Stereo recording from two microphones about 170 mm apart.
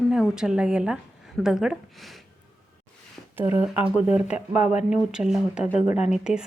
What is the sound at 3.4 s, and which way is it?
Speech, 10° right (ahead or behind).